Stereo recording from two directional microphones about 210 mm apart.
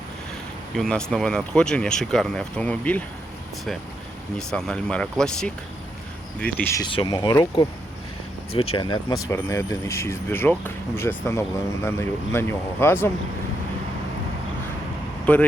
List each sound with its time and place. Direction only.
0.8 s speech: 5° left (ahead or behind)
4.4 s speech: 5° left (ahead or behind)
6.8 s speech: 20° left (ahead or behind)
8.7 s speech: 20° left (ahead or behind)
15.3 s speech: 5° left (ahead or behind)